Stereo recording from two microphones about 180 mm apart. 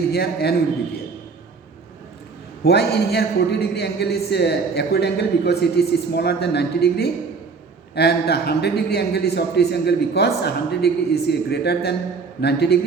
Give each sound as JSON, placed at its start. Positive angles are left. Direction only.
{"t": 0.1, "sound": "a man's voice", "side_deg": 60}
{"t": 2.6, "sound": "a man's voice", "side_deg": 65}